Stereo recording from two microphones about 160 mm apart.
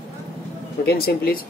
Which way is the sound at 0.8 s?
75° left (ahead or behind).